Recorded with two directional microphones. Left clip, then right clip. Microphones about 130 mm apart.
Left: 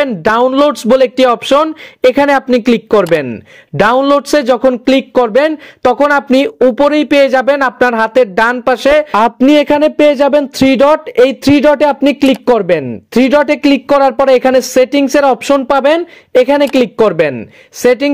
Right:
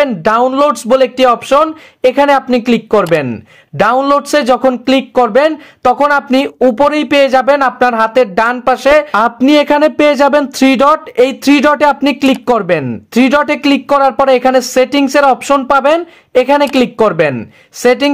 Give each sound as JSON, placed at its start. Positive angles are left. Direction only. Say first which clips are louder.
{"t": 0.0, "sound": "speech", "louder": "even", "side_deg": 35}